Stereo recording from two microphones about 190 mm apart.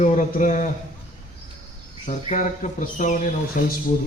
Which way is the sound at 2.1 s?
40° left (ahead or behind).